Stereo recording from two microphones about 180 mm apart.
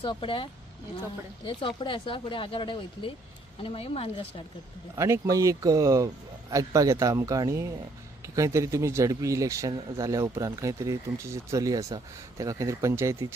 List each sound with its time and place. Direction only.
0.0 s speech: 30° left (ahead or behind)
1.5 s speech: 25° left (ahead or behind)
4.9 s a man's voice: 15° right (ahead or behind)